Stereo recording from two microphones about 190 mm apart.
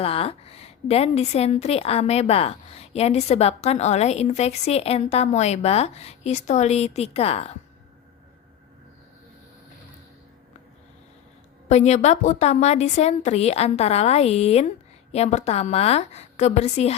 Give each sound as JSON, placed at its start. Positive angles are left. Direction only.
{"t": 0.0, "sound": "a woman's voice", "side_deg": 30}
{"t": 11.7, "sound": "a woman's voice", "side_deg": 35}